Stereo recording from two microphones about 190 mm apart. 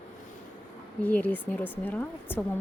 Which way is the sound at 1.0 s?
10° left (ahead or behind).